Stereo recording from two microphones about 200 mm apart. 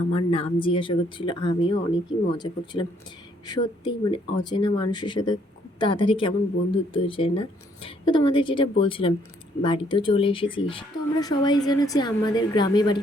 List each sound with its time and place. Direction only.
0.1 s speech: 25° left (ahead or behind)
3.4 s speech: 20° left (ahead or behind)